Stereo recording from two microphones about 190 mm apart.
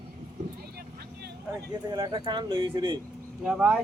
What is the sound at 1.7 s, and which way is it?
Speech, 20° right (ahead or behind).